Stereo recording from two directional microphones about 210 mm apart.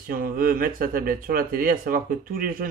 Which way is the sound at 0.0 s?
40° right (ahead or behind).